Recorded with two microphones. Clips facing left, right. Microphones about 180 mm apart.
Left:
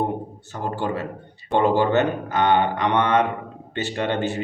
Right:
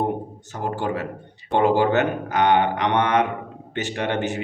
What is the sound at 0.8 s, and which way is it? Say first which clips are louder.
Speech: even; 15° right (ahead or behind).